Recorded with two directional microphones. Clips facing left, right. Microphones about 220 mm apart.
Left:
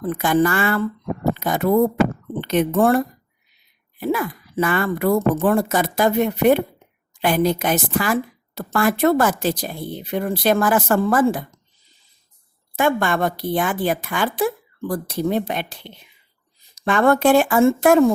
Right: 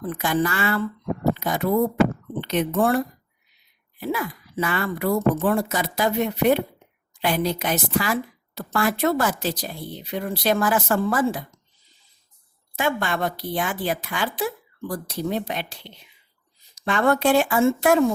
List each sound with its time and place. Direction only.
0.1 s a woman's voice: 50° left (ahead or behind)
4.0 s a woman's voice: 50° left (ahead or behind)
12.7 s a woman's voice: 50° left (ahead or behind)